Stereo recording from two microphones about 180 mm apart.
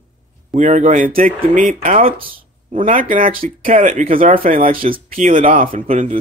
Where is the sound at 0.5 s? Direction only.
45° right (ahead or behind).